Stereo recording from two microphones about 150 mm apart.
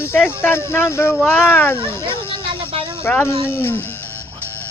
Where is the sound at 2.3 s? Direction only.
35° right (ahead or behind).